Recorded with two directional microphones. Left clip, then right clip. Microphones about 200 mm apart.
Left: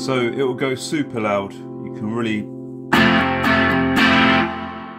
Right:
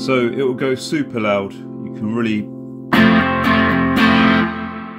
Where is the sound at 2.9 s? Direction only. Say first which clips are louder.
Right 1 dB; 40° right (ahead or behind).